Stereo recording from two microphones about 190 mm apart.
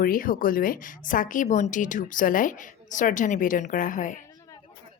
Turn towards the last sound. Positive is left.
turn(degrees=45)  # may be behind; listen again after turning